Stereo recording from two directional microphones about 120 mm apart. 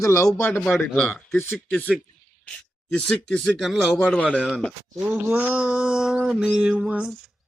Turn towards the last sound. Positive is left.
turn(degrees=-10)  # may be behind; listen again after turning